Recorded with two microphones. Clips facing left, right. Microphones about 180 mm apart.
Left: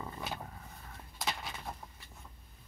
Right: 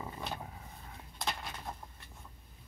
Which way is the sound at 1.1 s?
5° left (ahead or behind).